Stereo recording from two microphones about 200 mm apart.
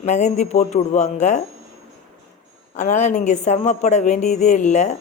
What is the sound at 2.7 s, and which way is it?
A woman's voice, 35° left (ahead or behind).